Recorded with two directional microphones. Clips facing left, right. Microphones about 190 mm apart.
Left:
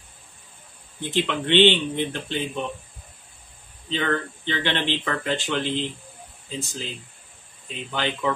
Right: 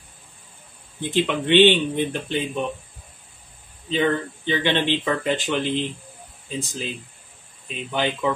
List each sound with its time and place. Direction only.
1.1 s speech: 15° right (ahead or behind)
3.9 s speech: 15° right (ahead or behind)